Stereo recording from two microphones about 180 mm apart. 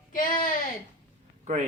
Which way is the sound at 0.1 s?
50° left (ahead or behind).